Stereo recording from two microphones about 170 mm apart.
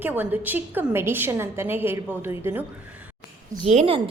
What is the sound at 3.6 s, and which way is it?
Speech, 40° right (ahead or behind).